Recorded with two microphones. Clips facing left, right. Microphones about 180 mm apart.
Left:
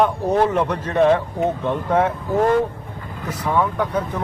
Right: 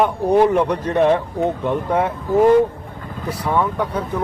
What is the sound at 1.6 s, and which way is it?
Speech, 15° right (ahead or behind).